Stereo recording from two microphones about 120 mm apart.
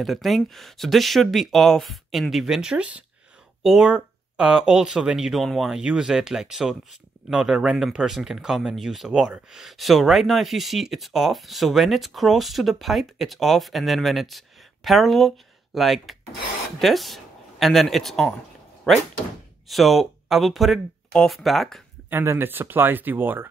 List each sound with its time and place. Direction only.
0.0 s speech: centre (ahead or behind)
19.7 s speech: centre (ahead or behind)
22.1 s speech: 20° right (ahead or behind)